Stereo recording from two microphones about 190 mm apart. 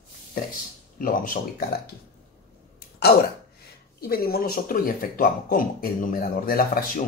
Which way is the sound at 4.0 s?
55° left (ahead or behind).